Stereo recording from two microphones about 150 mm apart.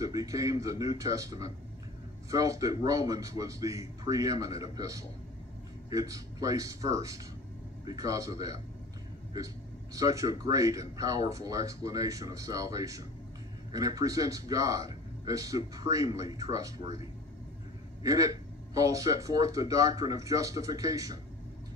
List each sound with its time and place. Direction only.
0.0 s speech: 25° right (ahead or behind)
9.9 s speech: 20° right (ahead or behind)
18.0 s speech: 25° right (ahead or behind)